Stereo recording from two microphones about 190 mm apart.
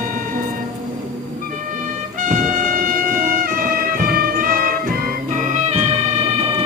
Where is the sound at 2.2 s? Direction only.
40° right (ahead or behind).